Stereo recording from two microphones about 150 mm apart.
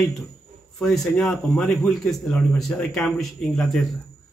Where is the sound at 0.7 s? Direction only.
Centre (ahead or behind).